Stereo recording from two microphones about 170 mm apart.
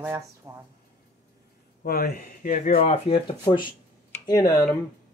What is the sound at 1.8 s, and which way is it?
Speech, 65° left (ahead or behind).